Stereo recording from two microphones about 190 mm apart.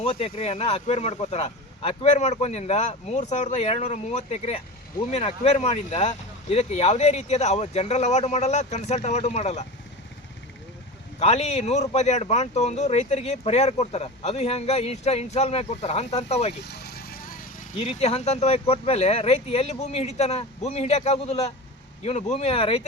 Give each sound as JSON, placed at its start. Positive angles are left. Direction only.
{"t": 0.0, "sound": "speech", "side_deg": 30}
{"t": 11.2, "sound": "speech", "side_deg": 35}
{"t": 16.6, "sound": "vehicle", "side_deg": 60}
{"t": 17.7, "sound": "speech", "side_deg": 35}